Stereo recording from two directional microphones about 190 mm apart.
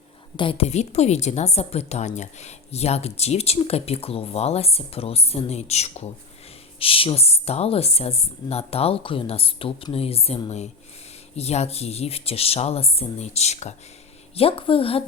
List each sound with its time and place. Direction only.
0.3 s a woman's voice: 30° left (ahead or behind)